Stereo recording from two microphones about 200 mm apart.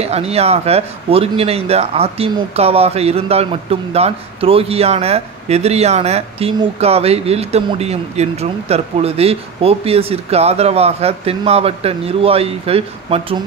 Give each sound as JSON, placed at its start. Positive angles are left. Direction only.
{"t": 0.0, "sound": "speech", "side_deg": -30}